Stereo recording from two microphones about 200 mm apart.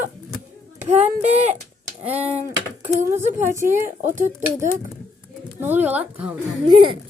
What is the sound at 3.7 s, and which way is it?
Speech, 40° right (ahead or behind).